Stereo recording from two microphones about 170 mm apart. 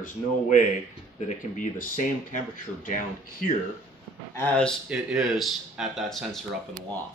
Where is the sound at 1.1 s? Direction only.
45° left (ahead or behind).